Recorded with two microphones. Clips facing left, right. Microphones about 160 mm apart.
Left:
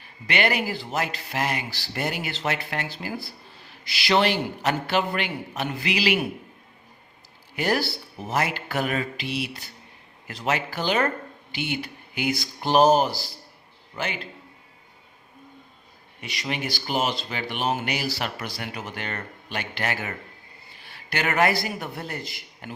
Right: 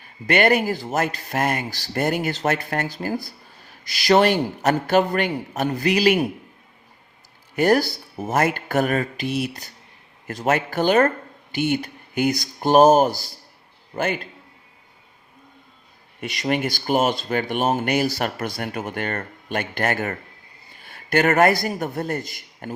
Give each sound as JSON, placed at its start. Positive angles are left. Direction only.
{"t": 0.0, "sound": "a man's voice", "side_deg": -45}
{"t": 7.5, "sound": "a man's voice", "side_deg": -45}
{"t": 16.2, "sound": "a man's voice", "side_deg": -50}